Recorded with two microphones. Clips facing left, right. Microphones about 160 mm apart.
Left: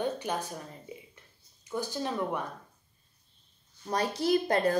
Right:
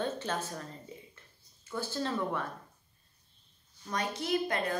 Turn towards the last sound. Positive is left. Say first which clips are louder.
# left 6 dB
turn(degrees=35)  # may be behind; listen again after turning